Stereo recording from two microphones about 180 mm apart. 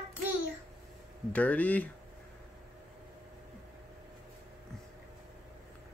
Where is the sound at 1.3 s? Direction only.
10° left (ahead or behind).